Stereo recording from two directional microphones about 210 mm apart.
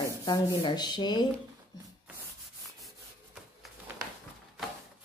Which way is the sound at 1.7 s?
20° left (ahead or behind).